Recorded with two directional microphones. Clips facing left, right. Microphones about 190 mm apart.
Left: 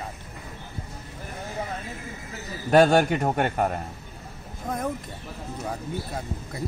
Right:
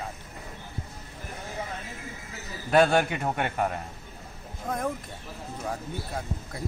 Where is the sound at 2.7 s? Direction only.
40° left (ahead or behind).